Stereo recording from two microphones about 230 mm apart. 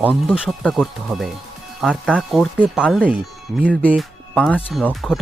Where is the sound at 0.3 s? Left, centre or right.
Centre.